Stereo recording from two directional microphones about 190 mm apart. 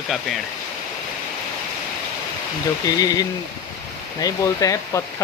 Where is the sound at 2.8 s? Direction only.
20° left (ahead or behind).